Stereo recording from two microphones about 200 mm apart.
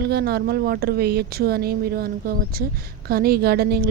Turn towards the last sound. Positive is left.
turn(degrees=-50)  # may be behind; listen again after turning